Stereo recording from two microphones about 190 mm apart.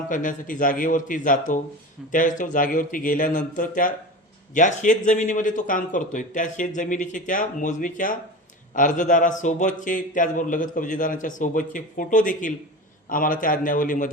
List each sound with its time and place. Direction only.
0.1 s a man's voice: 45° left (ahead or behind)